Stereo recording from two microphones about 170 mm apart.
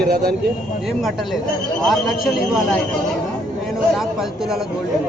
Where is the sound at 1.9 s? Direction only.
Centre (ahead or behind).